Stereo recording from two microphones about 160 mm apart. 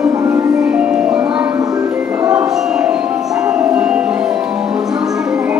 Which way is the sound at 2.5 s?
5° right (ahead or behind).